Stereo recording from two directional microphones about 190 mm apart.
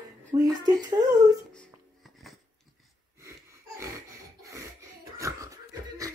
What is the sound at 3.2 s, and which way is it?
Wheeze, 15° right (ahead or behind).